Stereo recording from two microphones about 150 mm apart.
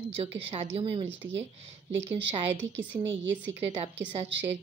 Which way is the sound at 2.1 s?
10° right (ahead or behind).